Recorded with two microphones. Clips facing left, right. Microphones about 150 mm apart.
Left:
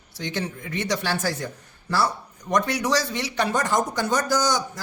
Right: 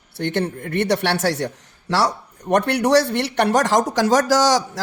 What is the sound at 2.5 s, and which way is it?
Speech, 65° right (ahead or behind).